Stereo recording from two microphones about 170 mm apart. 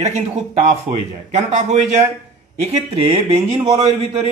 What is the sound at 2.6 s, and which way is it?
Speech, 35° right (ahead or behind).